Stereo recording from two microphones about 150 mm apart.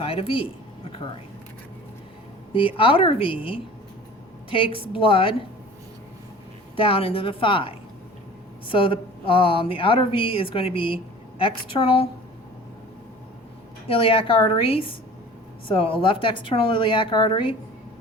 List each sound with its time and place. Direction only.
0.0 s speech: 40° left (ahead or behind)
2.5 s speech: 35° left (ahead or behind)
6.7 s speech: 40° left (ahead or behind)
13.8 s speech: 40° left (ahead or behind)